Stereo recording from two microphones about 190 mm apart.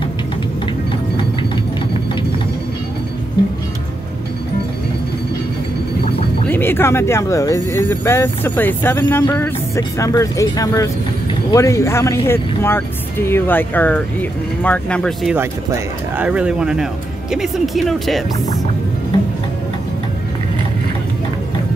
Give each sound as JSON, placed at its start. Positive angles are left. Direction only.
{"t": 6.5, "sound": "speech", "side_deg": 10}